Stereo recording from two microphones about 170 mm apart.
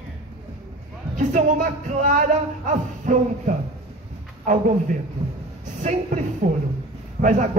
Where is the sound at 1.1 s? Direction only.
50° right (ahead or behind).